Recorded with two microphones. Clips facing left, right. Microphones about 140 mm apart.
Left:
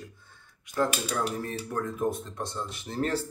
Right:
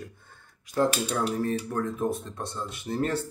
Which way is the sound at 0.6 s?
30° right (ahead or behind).